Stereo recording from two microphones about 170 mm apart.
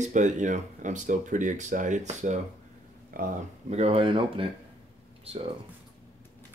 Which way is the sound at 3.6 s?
40° right (ahead or behind).